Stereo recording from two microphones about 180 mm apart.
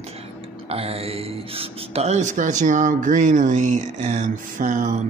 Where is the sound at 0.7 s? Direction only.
35° right (ahead or behind).